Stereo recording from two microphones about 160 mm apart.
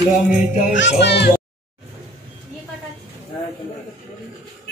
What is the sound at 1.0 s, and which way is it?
Speech, 90° left.